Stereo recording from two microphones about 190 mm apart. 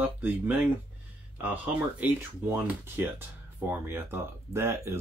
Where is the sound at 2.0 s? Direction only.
10° right (ahead or behind).